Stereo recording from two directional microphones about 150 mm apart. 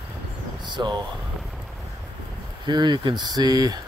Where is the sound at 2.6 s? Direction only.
30° right (ahead or behind).